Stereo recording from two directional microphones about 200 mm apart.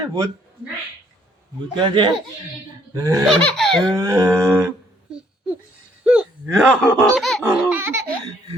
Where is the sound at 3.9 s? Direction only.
15° right (ahead or behind).